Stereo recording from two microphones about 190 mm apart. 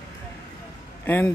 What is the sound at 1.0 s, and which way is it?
Speech, 10° left (ahead or behind).